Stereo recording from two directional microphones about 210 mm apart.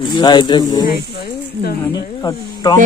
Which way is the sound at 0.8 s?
45° left (ahead or behind).